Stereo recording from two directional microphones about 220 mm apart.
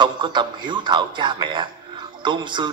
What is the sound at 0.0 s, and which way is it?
Speech, 20° right (ahead or behind).